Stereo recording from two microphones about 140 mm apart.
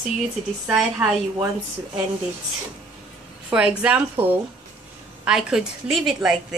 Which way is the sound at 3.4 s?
10° right (ahead or behind).